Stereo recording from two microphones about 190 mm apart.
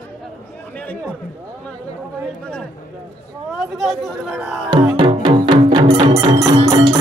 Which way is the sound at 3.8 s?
Centre (ahead or behind).